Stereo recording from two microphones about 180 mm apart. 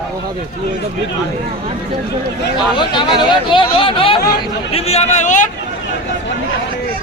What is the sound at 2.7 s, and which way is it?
Speech, 25° left (ahead or behind).